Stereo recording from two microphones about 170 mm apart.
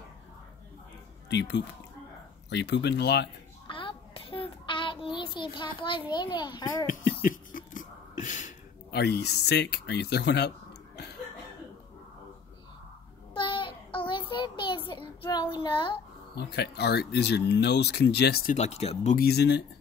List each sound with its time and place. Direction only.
1.3 s speech: 90° left
3.6 s child singing: 30° left (ahead or behind)
6.9 s a sound: 50° left (ahead or behind)
8.9 s speech: 75° left (ahead or behind)
13.3 s child singing: 30° left (ahead or behind)
16.3 s speech: 75° left (ahead or behind)
18.5 s speech: 40° left (ahead or behind)
19.1 s speech: 70° left (ahead or behind)